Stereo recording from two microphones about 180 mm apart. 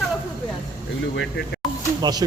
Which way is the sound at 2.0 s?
20° right (ahead or behind).